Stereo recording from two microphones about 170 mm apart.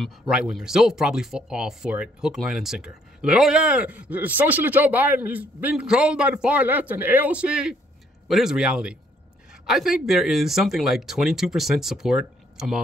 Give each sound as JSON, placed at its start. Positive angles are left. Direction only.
{"t": 0.0, "sound": "speech", "side_deg": -5}